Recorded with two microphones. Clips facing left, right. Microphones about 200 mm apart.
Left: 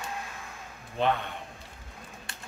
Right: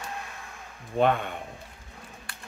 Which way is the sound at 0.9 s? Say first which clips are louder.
Right 4 dB; 50° right (ahead or behind).